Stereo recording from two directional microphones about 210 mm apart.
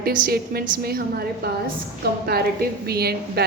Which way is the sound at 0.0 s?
45° right (ahead or behind).